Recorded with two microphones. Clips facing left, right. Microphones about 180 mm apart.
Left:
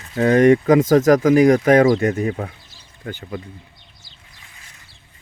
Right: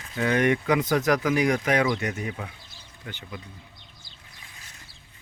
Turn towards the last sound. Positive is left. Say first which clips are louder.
# left 9 dB
turn(degrees=45)  # may be behind; listen again after turning